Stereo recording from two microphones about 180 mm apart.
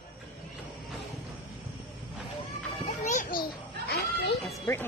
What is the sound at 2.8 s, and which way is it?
Children playing, 45° left (ahead or behind).